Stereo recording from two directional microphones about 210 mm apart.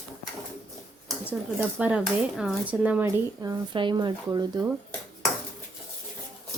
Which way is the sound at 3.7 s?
20° right (ahead or behind).